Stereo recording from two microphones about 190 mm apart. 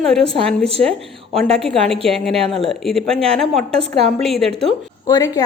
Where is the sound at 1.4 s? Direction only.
Centre (ahead or behind).